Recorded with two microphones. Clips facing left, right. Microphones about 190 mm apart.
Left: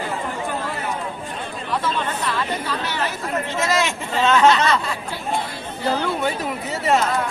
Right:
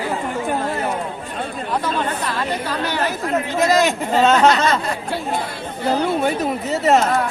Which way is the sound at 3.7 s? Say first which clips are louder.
Right 5 dB; 40° right (ahead or behind).